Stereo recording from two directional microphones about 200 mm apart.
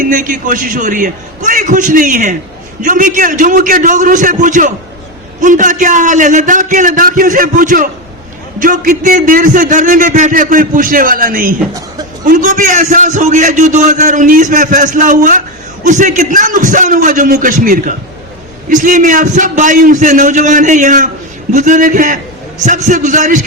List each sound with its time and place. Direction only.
0.0 s a man's voice: 40° right (ahead or behind)